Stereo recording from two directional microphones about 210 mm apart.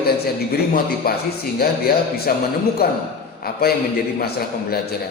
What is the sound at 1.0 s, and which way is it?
Speech, 45° left (ahead or behind).